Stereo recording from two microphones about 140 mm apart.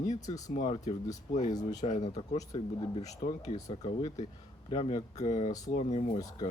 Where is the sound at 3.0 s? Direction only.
55° left (ahead or behind).